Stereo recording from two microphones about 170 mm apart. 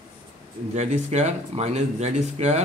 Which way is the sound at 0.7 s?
40° right (ahead or behind).